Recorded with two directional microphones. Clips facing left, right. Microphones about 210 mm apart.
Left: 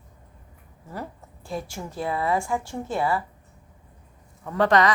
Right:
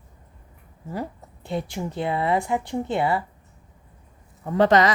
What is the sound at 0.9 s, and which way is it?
A woman's voice, 20° right (ahead or behind).